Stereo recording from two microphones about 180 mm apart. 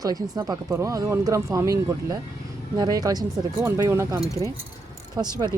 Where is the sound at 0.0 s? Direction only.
20° right (ahead or behind).